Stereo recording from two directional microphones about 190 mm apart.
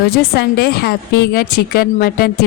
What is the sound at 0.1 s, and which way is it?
Speech, 55° left (ahead or behind).